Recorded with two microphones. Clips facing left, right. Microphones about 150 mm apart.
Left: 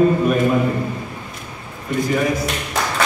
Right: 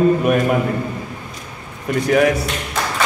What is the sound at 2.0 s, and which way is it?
Speech, 70° right (ahead or behind).